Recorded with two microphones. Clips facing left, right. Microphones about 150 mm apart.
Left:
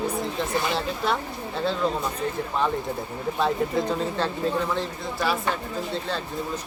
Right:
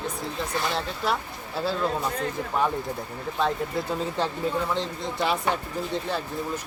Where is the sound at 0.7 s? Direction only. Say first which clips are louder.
Left 2 dB; centre (ahead or behind).